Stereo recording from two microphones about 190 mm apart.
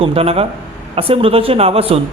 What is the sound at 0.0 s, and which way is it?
A man's voice, 30° right (ahead or behind).